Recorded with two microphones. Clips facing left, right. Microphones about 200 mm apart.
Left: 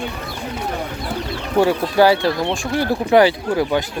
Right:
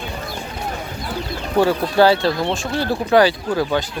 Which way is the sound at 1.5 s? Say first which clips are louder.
Even; 15° left (ahead or behind).